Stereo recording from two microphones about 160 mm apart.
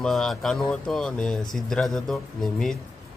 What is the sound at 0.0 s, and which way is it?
Speech, 5° left (ahead or behind).